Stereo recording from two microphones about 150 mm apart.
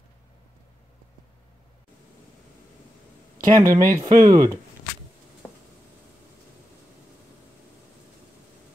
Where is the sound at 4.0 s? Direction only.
25° right (ahead or behind).